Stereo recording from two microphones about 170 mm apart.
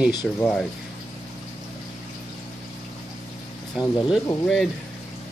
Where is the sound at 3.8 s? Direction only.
25° left (ahead or behind).